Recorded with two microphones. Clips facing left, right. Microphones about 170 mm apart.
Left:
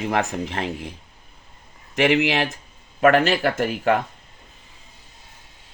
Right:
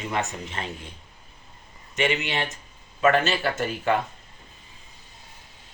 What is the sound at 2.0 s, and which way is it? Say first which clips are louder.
Speech: left 7 dB; 80° left.